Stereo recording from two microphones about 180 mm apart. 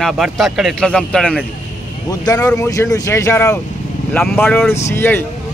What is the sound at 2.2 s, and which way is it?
A man's voice, 15° left (ahead or behind).